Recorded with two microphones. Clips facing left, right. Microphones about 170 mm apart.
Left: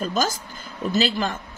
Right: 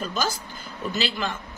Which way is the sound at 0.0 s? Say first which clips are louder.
Left 4 dB; 45° left (ahead or behind).